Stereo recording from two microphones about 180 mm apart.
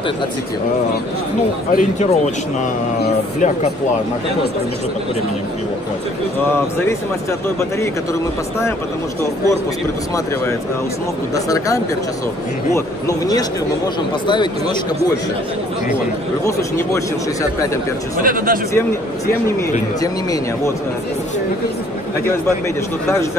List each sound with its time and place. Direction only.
1.7 s speech: 45° left (ahead or behind)
3.3 s speech: 45° left (ahead or behind)
6.5 s speech: 15° left (ahead or behind)
11.3 s speech: 20° left (ahead or behind)
16.4 s speech: 15° left (ahead or behind)
18.2 s speech: 50° right (ahead or behind)
20.0 s speech: 20° left (ahead or behind)